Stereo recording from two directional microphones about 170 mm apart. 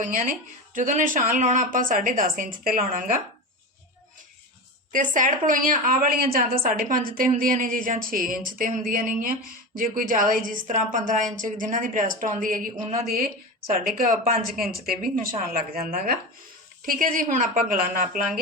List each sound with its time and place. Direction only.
0.0 s a woman's voice: 50° right (ahead or behind)
4.9 s a woman's voice: 50° right (ahead or behind)